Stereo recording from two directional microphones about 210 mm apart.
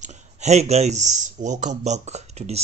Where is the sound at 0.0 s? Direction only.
35° right (ahead or behind).